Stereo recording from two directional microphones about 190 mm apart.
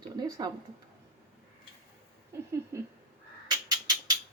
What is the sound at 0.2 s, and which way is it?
Speech, 20° right (ahead or behind).